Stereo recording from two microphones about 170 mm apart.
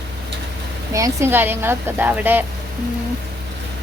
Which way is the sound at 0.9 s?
20° right (ahead or behind).